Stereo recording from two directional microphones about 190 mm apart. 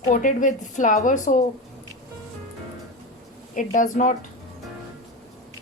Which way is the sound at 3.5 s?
45° left (ahead or behind).